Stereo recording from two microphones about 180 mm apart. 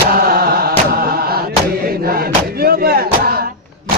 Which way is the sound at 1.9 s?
55° right (ahead or behind).